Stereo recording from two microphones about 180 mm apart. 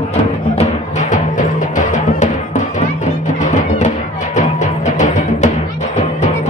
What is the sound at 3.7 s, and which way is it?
Music, 40° left (ahead or behind).